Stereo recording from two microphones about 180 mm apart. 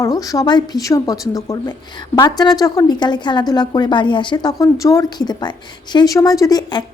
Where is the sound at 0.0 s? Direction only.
20° left (ahead or behind).